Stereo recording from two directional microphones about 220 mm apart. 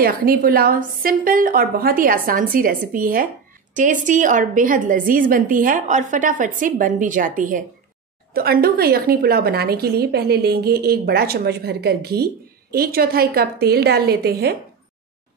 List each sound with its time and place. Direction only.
0.0 s a woman's voice: 40° right (ahead or behind)